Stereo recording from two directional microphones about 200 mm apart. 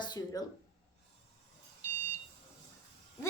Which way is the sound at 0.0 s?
20° left (ahead or behind).